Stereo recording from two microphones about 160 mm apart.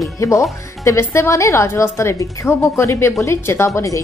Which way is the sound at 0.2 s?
20° left (ahead or behind).